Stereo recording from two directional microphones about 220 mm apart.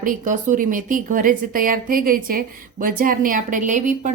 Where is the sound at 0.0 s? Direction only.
35° right (ahead or behind).